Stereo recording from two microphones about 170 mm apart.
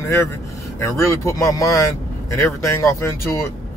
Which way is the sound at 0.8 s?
15° left (ahead or behind).